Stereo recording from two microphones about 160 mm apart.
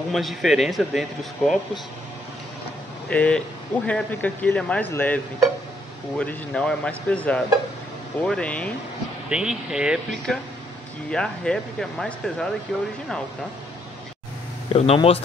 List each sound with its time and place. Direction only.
0.1 s speech: centre (ahead or behind)
3.1 s speech: 5° left (ahead or behind)
9.3 s speech: 5° right (ahead or behind)
14.7 s speech: 35° left (ahead or behind)